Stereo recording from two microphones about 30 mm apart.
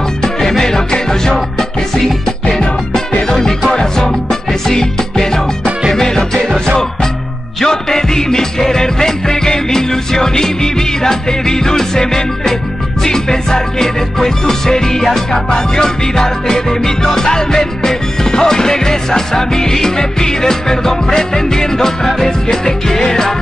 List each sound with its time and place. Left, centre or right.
0.2 s music: centre
3.3 s music: centre
7.6 s music: centre